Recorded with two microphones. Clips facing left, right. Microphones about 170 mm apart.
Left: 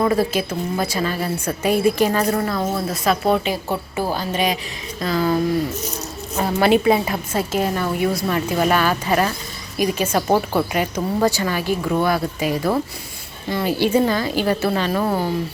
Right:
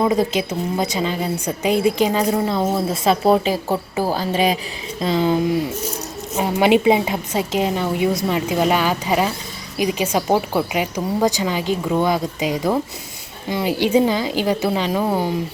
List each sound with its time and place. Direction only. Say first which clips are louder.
0.0 s speech: right 1 dB; 15° right (ahead or behind)
2.5 s speech: right 3 dB; 25° right (ahead or behind)
4.9 s speech: right 1 dB; 25° right (ahead or behind)